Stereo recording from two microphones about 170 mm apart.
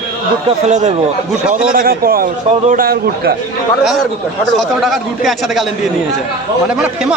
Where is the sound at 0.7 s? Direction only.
45° right (ahead or behind).